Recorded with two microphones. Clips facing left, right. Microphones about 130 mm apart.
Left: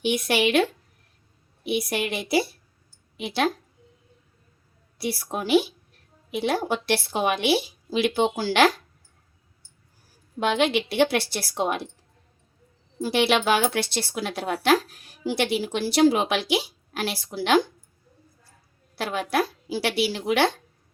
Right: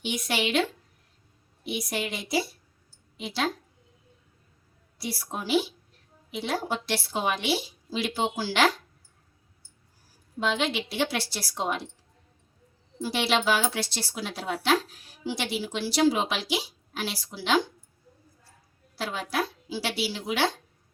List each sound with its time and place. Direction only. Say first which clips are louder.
0.0 s speech: left 7 dB; 60° left (ahead or behind)
4.9 s speech: left 5 dB; 60° left (ahead or behind)
10.4 s speech: left 5 dB; 60° left (ahead or behind)
13.0 s speech: left 5 dB; 60° left (ahead or behind)
18.9 s speech: left 5 dB; 65° left (ahead or behind)